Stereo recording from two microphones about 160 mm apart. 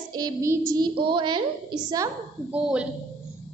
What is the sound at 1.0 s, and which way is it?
A woman's voice, 30° right (ahead or behind).